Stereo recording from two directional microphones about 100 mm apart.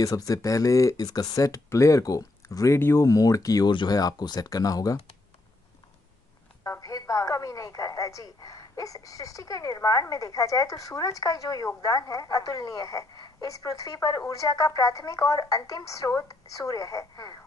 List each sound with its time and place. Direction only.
0.0 s speech: 35° left (ahead or behind)
6.6 s a woman's voice: 35° left (ahead or behind)